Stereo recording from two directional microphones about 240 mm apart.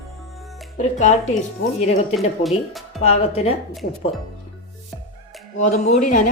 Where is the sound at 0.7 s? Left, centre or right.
Left.